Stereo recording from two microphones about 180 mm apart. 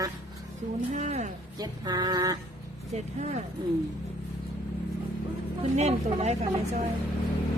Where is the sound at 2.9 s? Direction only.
35° right (ahead or behind).